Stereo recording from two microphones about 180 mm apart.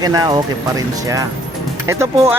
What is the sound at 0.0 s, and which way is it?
Speech, 20° right (ahead or behind).